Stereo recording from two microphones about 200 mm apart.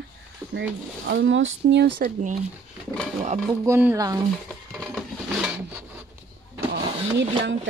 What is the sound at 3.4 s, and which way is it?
Speech, 10° right (ahead or behind).